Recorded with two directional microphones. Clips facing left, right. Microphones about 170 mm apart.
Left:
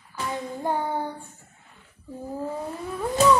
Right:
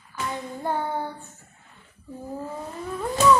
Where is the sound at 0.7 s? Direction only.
15° left (ahead or behind).